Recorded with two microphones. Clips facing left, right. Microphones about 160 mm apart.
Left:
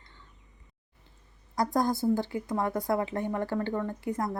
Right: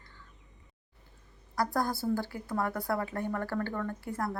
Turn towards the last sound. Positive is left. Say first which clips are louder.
# left 3 dB
turn(degrees=20)  # may be behind; listen again after turning